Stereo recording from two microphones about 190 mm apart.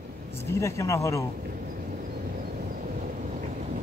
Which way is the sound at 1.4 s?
50° right (ahead or behind).